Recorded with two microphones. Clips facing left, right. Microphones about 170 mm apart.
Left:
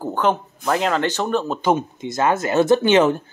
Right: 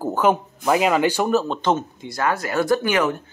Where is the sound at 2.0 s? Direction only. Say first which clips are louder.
Left 5 dB; 20° left (ahead or behind).